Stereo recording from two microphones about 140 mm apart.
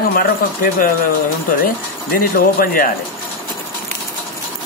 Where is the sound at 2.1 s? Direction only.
90° left.